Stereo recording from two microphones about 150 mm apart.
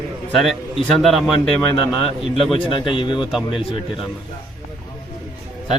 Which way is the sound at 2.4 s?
Centre (ahead or behind).